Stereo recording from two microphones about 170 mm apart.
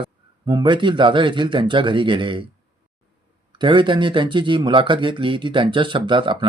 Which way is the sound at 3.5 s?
30° right (ahead or behind).